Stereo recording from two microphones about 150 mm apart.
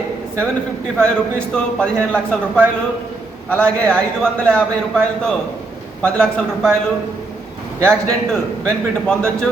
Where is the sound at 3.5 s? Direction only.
10° left (ahead or behind).